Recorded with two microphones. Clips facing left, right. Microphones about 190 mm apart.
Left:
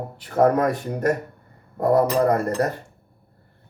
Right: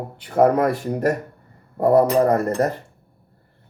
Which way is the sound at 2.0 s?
25° right (ahead or behind).